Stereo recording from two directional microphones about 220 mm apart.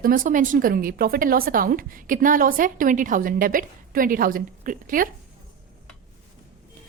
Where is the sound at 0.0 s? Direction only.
40° right (ahead or behind).